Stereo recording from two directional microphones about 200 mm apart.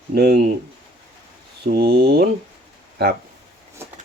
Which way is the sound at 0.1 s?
50° right (ahead or behind).